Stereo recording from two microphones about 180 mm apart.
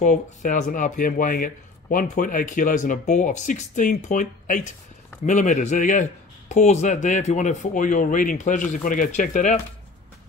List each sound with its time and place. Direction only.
0.0 s speech: 45° left (ahead or behind)